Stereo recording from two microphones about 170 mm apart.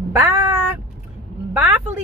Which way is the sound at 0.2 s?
10° right (ahead or behind).